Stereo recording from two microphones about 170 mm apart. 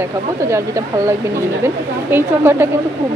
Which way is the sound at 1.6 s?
15° right (ahead or behind).